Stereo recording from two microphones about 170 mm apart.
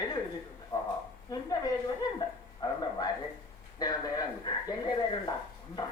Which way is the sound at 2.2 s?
20° left (ahead or behind).